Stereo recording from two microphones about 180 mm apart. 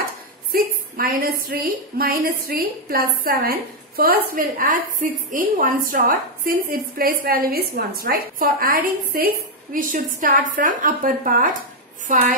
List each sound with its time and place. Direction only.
0.5 s a woman's voice: 55° right (ahead or behind)